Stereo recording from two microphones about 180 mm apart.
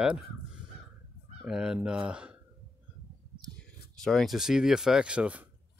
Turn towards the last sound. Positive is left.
turn(degrees=-5)  # may be behind; listen again after turning